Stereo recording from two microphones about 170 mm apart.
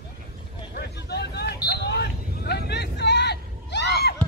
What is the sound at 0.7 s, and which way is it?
Hubbub, 75° left (ahead or behind).